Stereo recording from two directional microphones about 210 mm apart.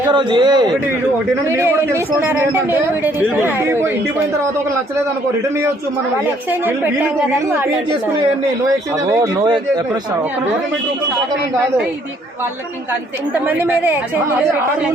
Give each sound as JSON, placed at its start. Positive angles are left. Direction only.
{"t": 0.1, "sound": "a man's voice", "side_deg": -20}
{"t": 9.0, "sound": "a man's voice", "side_deg": -20}
{"t": 13.3, "sound": "a man's voice", "side_deg": -10}